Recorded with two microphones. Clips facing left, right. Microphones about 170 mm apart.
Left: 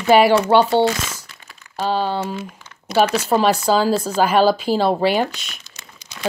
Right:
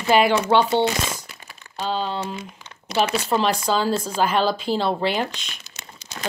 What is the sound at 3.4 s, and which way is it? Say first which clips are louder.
A woman's voice: left 5 dB; 5° left (ahead or behind).